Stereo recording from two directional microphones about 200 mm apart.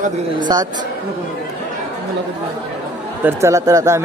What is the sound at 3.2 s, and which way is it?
Speech, 10° right (ahead or behind).